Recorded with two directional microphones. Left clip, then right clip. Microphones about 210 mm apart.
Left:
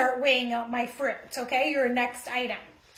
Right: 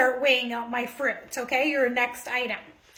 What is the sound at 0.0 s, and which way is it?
A woman's voice, 45° right (ahead or behind).